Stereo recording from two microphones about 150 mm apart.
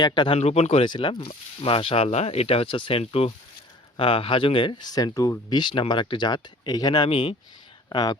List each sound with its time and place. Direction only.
0.0 s speech: 30° left (ahead or behind)
0.3 s speech: 45° left (ahead or behind); by 8.1 s 25° left (ahead or behind)